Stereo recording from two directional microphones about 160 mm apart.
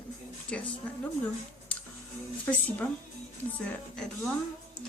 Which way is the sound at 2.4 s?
10° left (ahead or behind).